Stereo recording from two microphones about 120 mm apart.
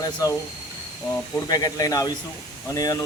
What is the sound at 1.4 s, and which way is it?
A man's voice, 30° left (ahead or behind).